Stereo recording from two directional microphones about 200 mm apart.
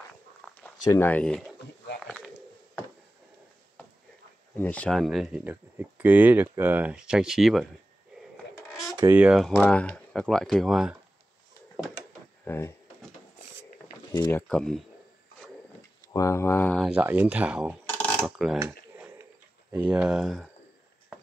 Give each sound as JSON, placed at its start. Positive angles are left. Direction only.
{"t": 0.4, "sound": "a sound", "side_deg": 0}
{"t": 0.8, "sound": "speech", "side_deg": 10}
{"t": 2.0, "sound": "a sound", "side_deg": 5}
{"t": 4.6, "sound": "speech", "side_deg": 5}
{"t": 8.9, "sound": "a sound", "side_deg": -20}
{"t": 9.2, "sound": "speech", "side_deg": 0}
{"t": 12.4, "sound": "speech", "side_deg": 10}
{"t": 14.3, "sound": "speech", "side_deg": 5}
{"t": 16.1, "sound": "speech", "side_deg": 15}
{"t": 16.8, "sound": "speech", "side_deg": -5}
{"t": 17.8, "sound": "a sound", "side_deg": 10}
{"t": 19.7, "sound": "speech", "side_deg": -5}